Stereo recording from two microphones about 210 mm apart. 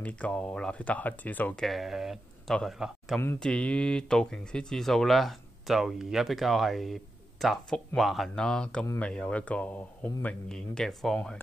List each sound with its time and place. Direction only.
0.0 s speech: 5° left (ahead or behind)